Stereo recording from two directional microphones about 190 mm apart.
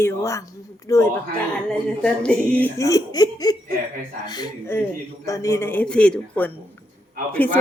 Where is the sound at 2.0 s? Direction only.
5° left (ahead or behind).